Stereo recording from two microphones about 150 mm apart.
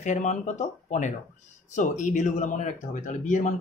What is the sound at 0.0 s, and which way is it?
Speech, 55° left (ahead or behind).